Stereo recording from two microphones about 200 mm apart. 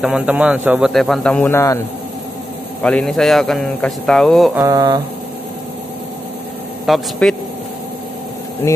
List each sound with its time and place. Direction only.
0.0 s a man's voice: 5° right (ahead or behind); by 1.8 s 15° left (ahead or behind)
2.8 s a man's voice: 5° left (ahead or behind)
4.6 s speech: 20° right (ahead or behind)
6.9 s a man's voice: centre (ahead or behind)